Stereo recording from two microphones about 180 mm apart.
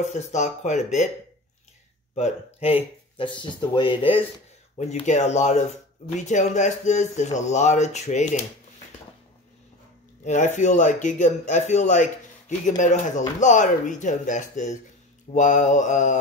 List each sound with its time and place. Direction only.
0.1 s speech: 40° left (ahead or behind)
2.1 s speech: 35° left (ahead or behind)
4.7 s speech: 40° left (ahead or behind)
10.2 s speech: 40° left (ahead or behind)